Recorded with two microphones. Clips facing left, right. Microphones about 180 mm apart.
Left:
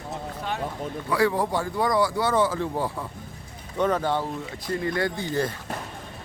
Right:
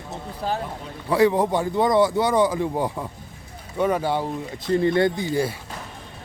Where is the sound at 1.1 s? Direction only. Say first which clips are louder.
Right 5 dB; 20° right (ahead or behind).